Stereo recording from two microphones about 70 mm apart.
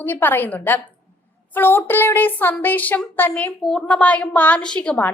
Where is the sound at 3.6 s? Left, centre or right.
Centre.